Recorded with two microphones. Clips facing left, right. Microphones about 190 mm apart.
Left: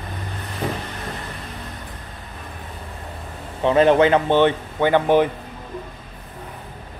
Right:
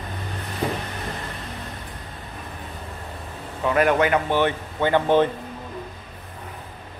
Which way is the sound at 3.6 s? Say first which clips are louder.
Left 5 dB; 25° left (ahead or behind).